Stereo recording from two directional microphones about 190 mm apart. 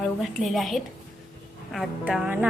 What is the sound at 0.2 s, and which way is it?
Speech, centre (ahead or behind).